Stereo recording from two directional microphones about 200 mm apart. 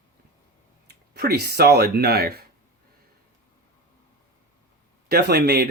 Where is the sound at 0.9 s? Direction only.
50° right (ahead or behind).